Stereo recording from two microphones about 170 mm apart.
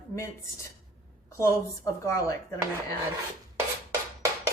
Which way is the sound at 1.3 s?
15° left (ahead or behind).